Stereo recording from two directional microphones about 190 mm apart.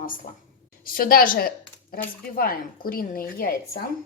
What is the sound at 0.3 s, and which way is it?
Speech, 50° left (ahead or behind).